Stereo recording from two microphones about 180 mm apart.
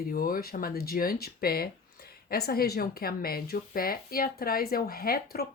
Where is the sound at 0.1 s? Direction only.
55° left (ahead or behind).